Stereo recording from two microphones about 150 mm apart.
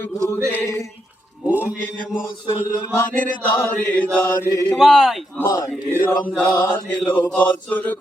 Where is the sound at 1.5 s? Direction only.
10° right (ahead or behind).